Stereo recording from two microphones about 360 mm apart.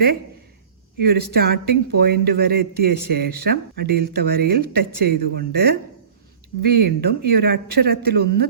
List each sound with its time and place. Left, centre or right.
0.9 s speech: right